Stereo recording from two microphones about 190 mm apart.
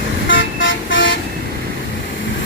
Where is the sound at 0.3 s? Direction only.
80° left.